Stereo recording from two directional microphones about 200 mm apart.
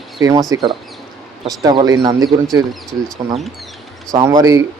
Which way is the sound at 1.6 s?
20° right (ahead or behind).